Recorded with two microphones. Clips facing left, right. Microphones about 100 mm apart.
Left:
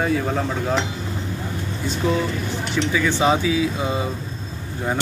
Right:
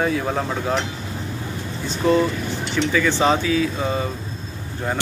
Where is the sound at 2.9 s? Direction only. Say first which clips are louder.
Right 1 dB; 5° left (ahead or behind).